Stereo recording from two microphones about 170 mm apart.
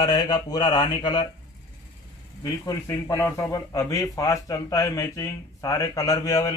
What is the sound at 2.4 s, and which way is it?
Speech, 20° left (ahead or behind).